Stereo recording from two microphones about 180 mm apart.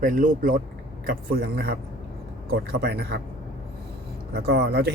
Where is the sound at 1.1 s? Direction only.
60° right (ahead or behind).